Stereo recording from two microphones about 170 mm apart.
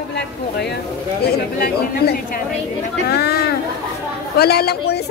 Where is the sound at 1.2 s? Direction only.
65° left (ahead or behind).